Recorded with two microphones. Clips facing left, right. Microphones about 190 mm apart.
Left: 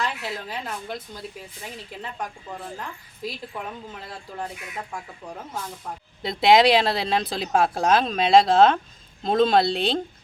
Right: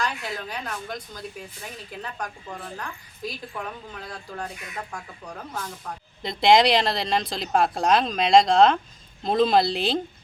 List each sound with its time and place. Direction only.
0.0 s a woman's voice: 5° left (ahead or behind)
1.9 s speech: 5° left (ahead or behind)
2.7 s a woman's voice: 25° left (ahead or behind)
3.6 s speech: 5° left (ahead or behind)
6.2 s speech: 5° left (ahead or behind)